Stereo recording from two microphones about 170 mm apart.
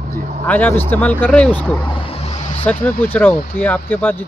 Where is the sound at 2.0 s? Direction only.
35° left (ahead or behind).